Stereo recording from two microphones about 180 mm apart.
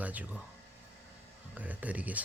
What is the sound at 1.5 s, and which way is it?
Speech, 10° right (ahead or behind).